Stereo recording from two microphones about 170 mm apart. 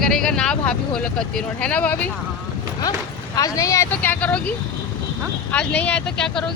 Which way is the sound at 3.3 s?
20° left (ahead or behind).